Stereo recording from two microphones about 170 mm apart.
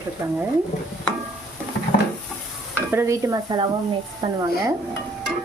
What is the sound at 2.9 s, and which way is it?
A woman's voice, 15° right (ahead or behind).